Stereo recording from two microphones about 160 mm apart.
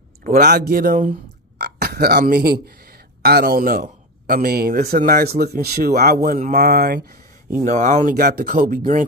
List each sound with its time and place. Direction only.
0.4 s speech: 90° right; by 0.9 s 70° right (ahead or behind)
1.6 s speech: 90° right; by 7.0 s 75° right (ahead or behind)
7.6 s speech: 50° right (ahead or behind)
8.1 s speech: 65° right (ahead or behind)